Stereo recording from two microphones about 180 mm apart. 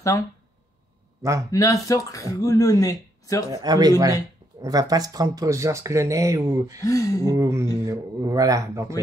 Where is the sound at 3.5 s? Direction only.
20° right (ahead or behind).